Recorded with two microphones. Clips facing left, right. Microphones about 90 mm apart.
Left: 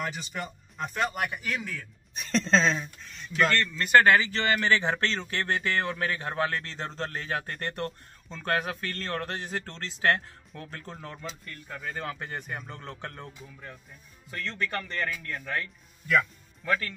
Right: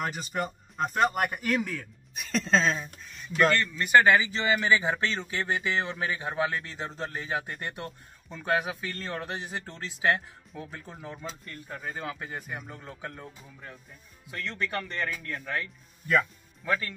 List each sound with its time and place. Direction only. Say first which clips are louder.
0.0 s speech: right 3 dB; 45° right (ahead or behind)
2.1 s speech: left 1 dB; 5° right (ahead or behind)